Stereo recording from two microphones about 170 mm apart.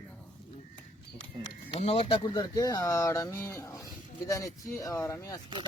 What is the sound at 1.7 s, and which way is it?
Speech, 35° left (ahead or behind).